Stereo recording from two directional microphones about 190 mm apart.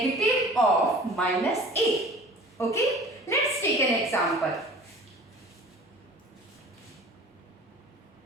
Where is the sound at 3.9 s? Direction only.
Centre (ahead or behind).